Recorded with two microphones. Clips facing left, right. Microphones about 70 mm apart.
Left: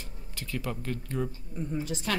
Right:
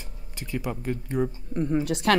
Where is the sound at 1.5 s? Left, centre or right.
Right.